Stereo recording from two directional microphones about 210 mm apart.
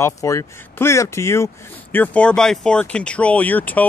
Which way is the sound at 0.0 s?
15° left (ahead or behind).